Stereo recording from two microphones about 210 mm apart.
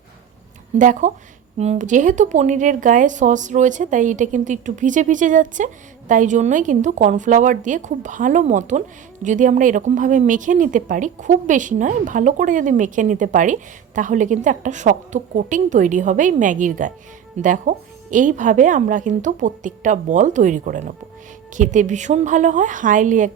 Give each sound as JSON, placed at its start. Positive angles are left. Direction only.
{"t": 0.8, "sound": "a woman's voice", "side_deg": -35}